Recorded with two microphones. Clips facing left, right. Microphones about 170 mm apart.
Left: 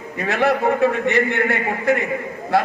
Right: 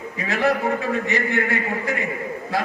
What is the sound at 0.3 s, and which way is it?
A man's voice, 60° left (ahead or behind).